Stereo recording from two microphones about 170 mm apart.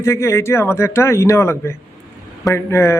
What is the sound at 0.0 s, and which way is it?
A man's voice, 15° left (ahead or behind).